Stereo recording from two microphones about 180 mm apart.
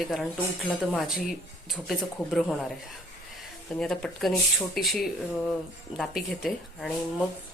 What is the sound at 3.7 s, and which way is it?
Speech, 5° left (ahead or behind).